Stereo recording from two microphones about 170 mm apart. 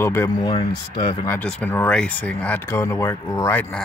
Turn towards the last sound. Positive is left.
turn(degrees=15)  # may be behind; listen again after turning